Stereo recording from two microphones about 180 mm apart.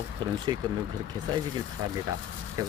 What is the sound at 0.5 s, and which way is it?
Speech, 25° right (ahead or behind).